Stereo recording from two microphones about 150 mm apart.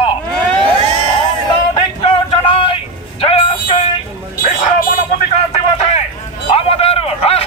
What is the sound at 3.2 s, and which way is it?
Music, 40° left (ahead or behind).